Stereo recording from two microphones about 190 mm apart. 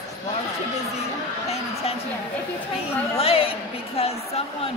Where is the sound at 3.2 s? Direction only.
30° left (ahead or behind).